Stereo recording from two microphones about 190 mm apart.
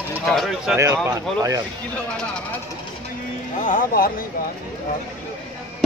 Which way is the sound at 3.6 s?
45° left (ahead or behind).